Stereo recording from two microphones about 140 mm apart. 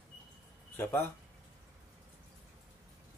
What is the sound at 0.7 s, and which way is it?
Speech, 15° left (ahead or behind).